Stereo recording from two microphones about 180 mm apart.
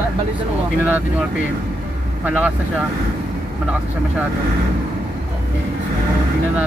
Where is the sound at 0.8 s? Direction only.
10° right (ahead or behind).